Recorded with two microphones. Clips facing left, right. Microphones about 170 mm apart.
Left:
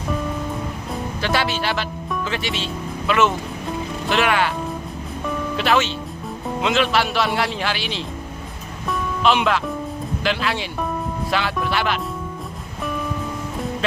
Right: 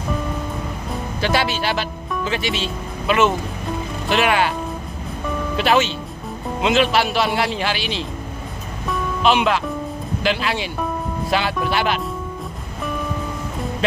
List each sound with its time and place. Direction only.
1.2 s speech: 10° right (ahead or behind)
5.6 s speech: 15° right (ahead or behind)
8.8 s music: 5° right (ahead or behind)
10.2 s speech: 10° right (ahead or behind)